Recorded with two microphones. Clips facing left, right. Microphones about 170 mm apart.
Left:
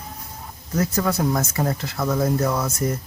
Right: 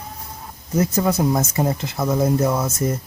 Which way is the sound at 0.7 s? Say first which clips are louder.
Right 3 dB; 20° right (ahead or behind).